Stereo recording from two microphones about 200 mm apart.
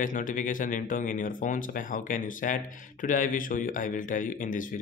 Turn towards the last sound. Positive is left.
turn(degrees=40)  # may be behind; listen again after turning